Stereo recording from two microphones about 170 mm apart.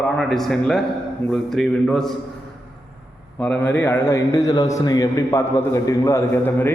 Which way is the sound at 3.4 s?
10° left (ahead or behind).